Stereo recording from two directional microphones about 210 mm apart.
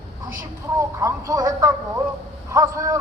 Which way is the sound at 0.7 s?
15° right (ahead or behind).